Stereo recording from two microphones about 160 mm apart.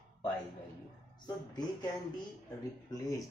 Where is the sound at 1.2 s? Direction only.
25° left (ahead or behind).